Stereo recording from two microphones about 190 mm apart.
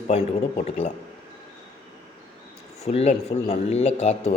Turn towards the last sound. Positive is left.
turn(degrees=35)  # may be behind; listen again after turning